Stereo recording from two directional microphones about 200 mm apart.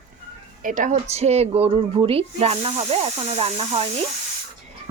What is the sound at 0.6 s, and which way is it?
Speech, 40° right (ahead or behind).